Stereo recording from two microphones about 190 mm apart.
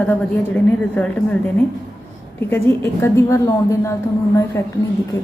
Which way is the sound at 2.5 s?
15° left (ahead or behind).